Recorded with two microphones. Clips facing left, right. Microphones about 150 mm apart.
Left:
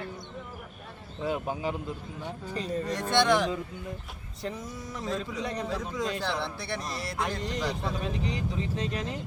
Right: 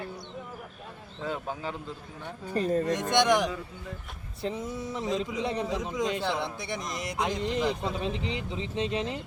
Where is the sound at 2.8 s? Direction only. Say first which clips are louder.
Right 1 dB; 20° right (ahead or behind).